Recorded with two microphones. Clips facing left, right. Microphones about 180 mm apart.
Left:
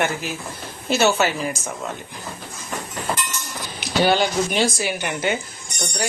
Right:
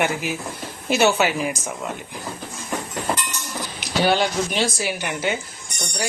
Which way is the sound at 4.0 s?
Centre (ahead or behind).